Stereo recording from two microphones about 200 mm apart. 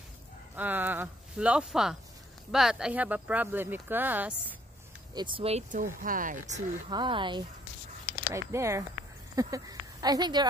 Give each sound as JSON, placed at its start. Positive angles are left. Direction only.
{"t": 0.6, "sound": "speech", "side_deg": -10}
{"t": 5.1, "sound": "speech", "side_deg": -25}
{"t": 6.9, "sound": "speech", "side_deg": -25}